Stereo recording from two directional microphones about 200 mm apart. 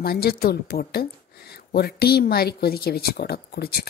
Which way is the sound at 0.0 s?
50° left (ahead or behind).